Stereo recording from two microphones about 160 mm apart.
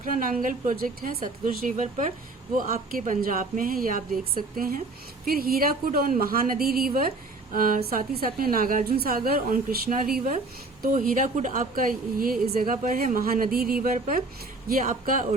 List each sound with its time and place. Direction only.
0.0 s a woman's voice: 60° right (ahead or behind)